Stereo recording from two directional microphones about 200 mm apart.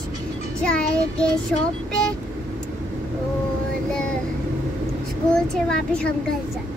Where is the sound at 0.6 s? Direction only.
5° left (ahead or behind).